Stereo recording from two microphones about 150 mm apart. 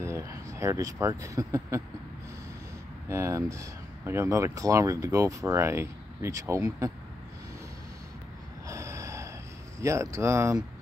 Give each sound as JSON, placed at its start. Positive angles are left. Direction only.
{"t": 0.0, "sound": "speech", "side_deg": -20}
{"t": 3.1, "sound": "speech", "side_deg": -20}
{"t": 8.7, "sound": "snort", "side_deg": -20}
{"t": 9.8, "sound": "speech", "side_deg": -20}